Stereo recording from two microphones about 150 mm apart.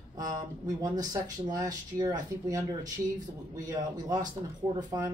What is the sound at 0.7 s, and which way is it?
Speech, 25° right (ahead or behind).